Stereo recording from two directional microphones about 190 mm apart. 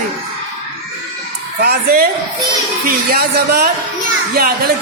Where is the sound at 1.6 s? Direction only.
55° right (ahead or behind).